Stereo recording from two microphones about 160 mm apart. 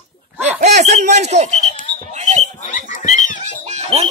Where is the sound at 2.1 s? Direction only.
45° right (ahead or behind).